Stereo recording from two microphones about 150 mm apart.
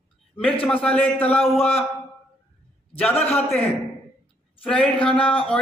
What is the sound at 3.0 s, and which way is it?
Speech, 10° left (ahead or behind).